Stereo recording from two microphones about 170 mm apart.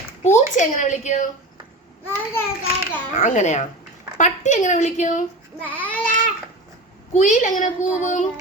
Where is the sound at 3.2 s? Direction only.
45° left (ahead or behind).